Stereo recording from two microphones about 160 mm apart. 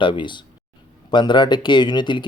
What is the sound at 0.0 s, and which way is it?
Speech, 30° left (ahead or behind).